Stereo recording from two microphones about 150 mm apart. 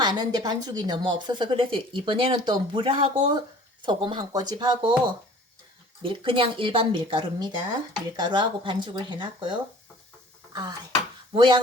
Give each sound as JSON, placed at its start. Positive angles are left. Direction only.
{"t": 0.0, "sound": "a woman's voice", "side_deg": -25}
{"t": 6.0, "sound": "speech", "side_deg": -35}